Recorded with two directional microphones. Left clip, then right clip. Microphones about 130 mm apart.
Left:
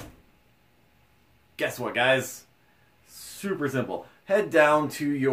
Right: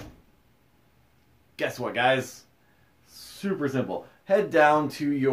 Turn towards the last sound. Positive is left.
turn(degrees=-25)  # may be behind; listen again after turning